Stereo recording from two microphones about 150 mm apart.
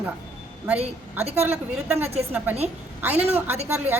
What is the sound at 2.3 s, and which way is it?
A woman's voice, 15° right (ahead or behind).